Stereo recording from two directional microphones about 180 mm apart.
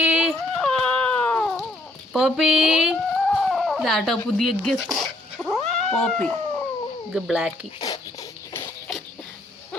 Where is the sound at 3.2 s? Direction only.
5° left (ahead or behind).